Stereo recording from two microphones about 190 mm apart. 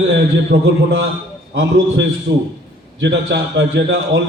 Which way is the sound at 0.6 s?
70° right (ahead or behind).